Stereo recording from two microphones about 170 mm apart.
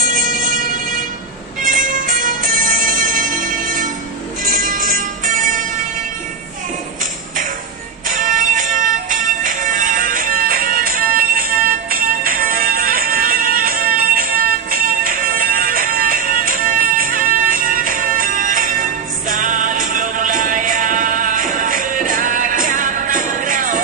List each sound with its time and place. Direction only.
0.0 s a sound: 55° right (ahead or behind)
1.7 s music: 50° right (ahead or behind)
8.1 s music: 55° right (ahead or behind)